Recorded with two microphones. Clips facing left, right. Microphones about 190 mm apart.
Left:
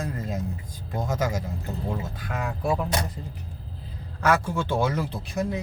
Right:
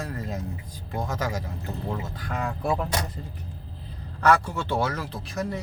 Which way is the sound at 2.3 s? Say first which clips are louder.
Even; 5° left (ahead or behind).